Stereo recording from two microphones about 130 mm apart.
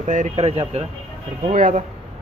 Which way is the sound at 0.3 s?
50° right (ahead or behind).